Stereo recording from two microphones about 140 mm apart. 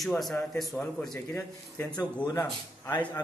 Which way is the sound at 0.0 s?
5° left (ahead or behind).